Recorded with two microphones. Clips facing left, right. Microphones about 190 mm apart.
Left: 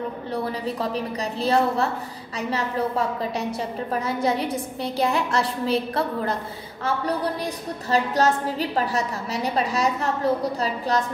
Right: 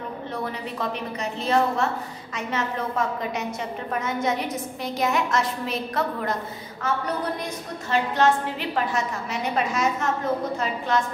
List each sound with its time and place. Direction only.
0.3 s a woman's voice: 35° left (ahead or behind)
7.9 s a woman's voice: 40° left (ahead or behind)